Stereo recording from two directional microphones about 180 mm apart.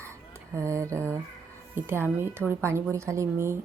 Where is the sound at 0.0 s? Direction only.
15° right (ahead or behind).